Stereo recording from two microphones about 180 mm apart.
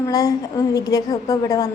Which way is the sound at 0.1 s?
20° left (ahead or behind).